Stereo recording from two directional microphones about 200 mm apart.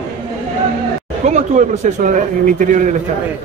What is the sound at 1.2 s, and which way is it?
Speech, 35° right (ahead or behind).